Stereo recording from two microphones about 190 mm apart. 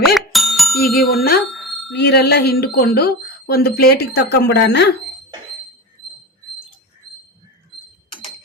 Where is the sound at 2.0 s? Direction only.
60° left (ahead or behind).